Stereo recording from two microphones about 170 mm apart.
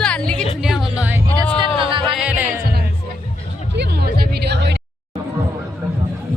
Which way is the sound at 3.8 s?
80° right.